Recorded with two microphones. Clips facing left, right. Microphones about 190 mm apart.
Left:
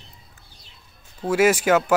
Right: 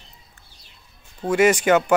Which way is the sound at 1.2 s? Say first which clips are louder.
Right 1 dB; 5° left (ahead or behind).